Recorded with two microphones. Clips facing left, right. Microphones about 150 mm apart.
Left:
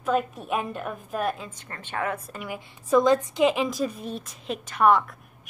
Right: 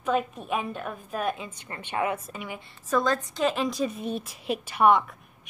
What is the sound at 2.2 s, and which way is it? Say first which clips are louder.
Speech: left 2 dB; centre (ahead or behind).